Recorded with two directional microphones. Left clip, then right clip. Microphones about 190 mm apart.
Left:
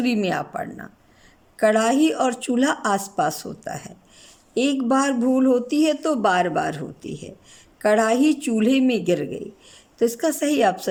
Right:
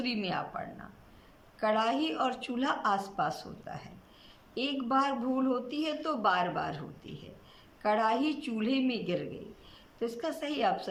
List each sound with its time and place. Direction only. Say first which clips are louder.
0.0 s speech: left 11 dB; 45° left (ahead or behind)